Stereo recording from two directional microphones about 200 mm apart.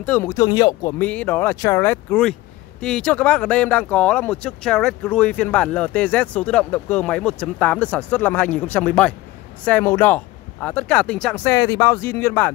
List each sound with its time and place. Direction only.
0.0 s speech: 10° left (ahead or behind)
0.9 s speech: 5° left (ahead or behind)